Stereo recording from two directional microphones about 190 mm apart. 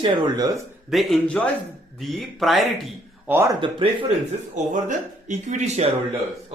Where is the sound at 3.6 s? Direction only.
25° right (ahead or behind).